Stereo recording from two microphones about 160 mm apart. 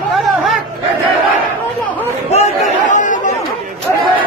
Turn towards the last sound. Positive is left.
turn(degrees=50)  # may be behind; listen again after turning